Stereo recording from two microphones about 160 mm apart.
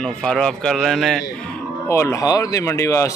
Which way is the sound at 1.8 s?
15° left (ahead or behind).